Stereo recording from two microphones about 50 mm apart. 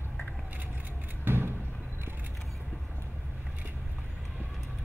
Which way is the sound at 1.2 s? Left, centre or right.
Right.